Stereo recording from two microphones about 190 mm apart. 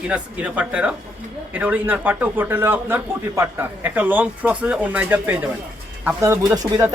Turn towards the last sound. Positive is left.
turn(degrees=-20)  # may be behind; listen again after turning